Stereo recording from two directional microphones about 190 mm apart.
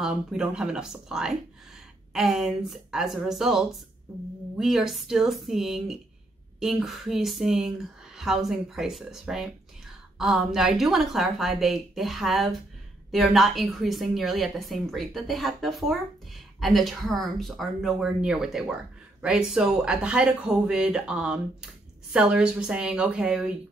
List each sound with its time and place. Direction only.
0.0 s a woman's voice: 5° right (ahead or behind)